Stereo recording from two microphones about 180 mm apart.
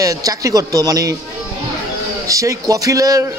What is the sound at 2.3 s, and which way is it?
Speech, 20° right (ahead or behind).